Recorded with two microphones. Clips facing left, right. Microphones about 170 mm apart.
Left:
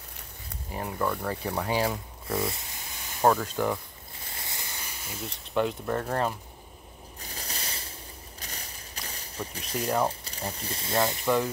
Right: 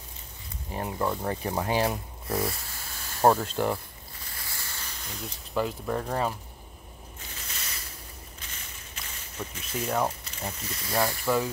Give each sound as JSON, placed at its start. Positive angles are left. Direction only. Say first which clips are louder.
{"t": 0.8, "sound": "speech", "louder": "right 1 dB", "side_deg": -20}
{"t": 1.8, "sound": "speech", "louder": "right 1 dB", "side_deg": -25}
{"t": 2.5, "sound": "a sound", "louder": "even", "side_deg": 15}
{"t": 3.5, "sound": "speech", "louder": "even", "side_deg": -10}
{"t": 4.4, "sound": "speech", "louder": "left 1 dB", "side_deg": 20}
{"t": 7.2, "sound": "a sound", "louder": "left 5 dB", "side_deg": 35}
{"t": 10.0, "sound": "speech", "louder": "left 1 dB", "side_deg": 35}
{"t": 11.2, "sound": "speech", "louder": "left 1 dB", "side_deg": -5}